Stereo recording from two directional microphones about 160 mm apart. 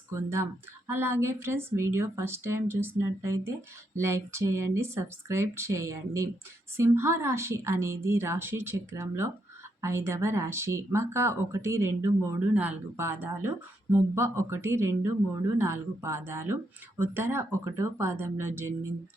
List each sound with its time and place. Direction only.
0.1 s speech: 15° right (ahead or behind)